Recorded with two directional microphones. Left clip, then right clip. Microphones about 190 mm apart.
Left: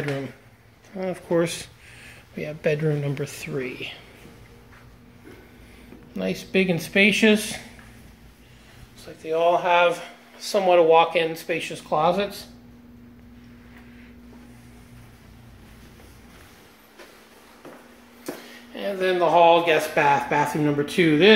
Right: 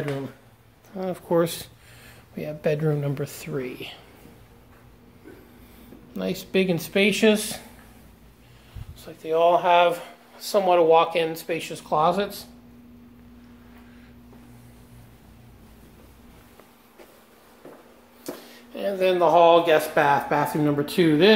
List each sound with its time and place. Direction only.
0.9 s speech: 5° right (ahead or behind)
6.1 s speech: 5° right (ahead or behind)
9.0 s speech: 20° right (ahead or behind)
10.5 s speech: 5° right (ahead or behind)
18.8 s speech: 5° right (ahead or behind)